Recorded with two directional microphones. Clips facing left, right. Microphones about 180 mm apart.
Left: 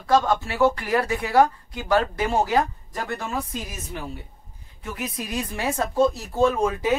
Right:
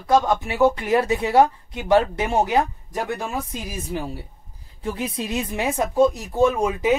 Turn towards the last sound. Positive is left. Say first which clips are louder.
# right 2 dB
turn(degrees=-15)  # may be behind; listen again after turning